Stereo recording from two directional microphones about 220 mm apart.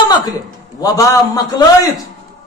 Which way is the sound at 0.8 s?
15° left (ahead or behind).